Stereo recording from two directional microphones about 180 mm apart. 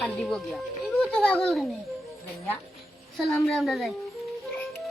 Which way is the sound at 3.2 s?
Centre (ahead or behind).